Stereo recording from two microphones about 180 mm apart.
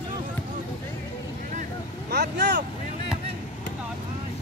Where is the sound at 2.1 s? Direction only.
65° right (ahead or behind).